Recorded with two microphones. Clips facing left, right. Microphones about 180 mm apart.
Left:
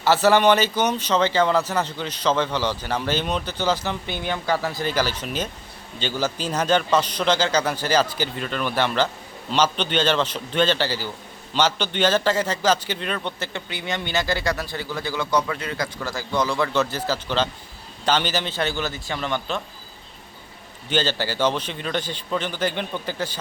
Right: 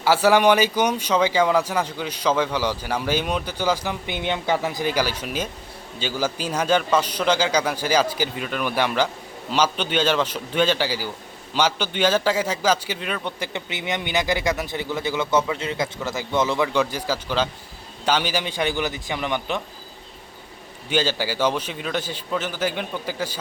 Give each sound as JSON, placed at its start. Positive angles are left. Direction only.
{"t": 0.0, "sound": "a man's voice", "side_deg": -10}
{"t": 20.9, "sound": "a man's voice", "side_deg": -10}